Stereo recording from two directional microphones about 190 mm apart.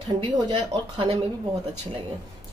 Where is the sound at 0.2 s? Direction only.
25° right (ahead or behind).